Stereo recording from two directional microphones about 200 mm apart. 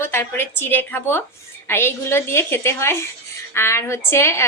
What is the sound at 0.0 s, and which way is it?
A woman's voice, 10° left (ahead or behind).